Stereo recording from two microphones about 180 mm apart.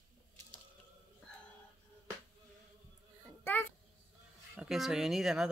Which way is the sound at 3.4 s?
10° left (ahead or behind).